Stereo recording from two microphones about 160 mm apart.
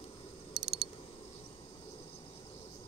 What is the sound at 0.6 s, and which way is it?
Mechanisms, 30° right (ahead or behind).